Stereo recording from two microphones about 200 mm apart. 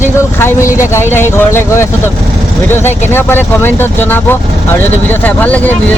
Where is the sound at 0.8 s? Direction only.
15° left (ahead or behind).